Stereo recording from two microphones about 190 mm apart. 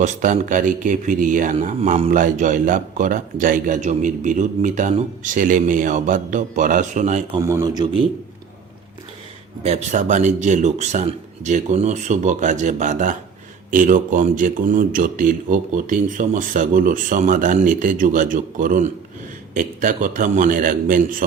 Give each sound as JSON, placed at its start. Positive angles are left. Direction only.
{"t": 0.0, "sound": "a man's voice", "side_deg": -40}
{"t": 7.3, "sound": "a man's voice", "side_deg": -20}
{"t": 9.6, "sound": "a man's voice", "side_deg": -35}